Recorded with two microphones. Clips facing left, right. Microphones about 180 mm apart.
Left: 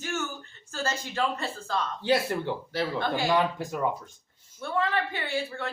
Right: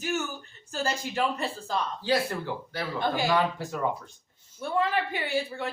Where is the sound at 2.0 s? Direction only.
25° left (ahead or behind).